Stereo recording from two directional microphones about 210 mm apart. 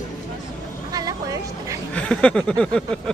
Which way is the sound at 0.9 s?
15° right (ahead or behind).